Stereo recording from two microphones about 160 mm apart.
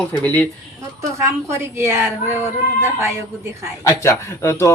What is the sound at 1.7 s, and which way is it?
Speech, 15° right (ahead or behind).